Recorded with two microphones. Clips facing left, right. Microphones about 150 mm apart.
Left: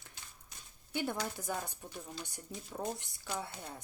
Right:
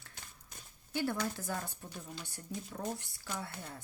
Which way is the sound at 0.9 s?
15° left (ahead or behind).